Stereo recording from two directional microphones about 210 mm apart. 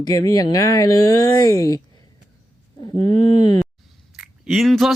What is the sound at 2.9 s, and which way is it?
Speech, 90° left.